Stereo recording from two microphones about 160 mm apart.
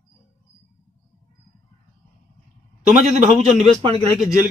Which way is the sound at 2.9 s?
45° right (ahead or behind).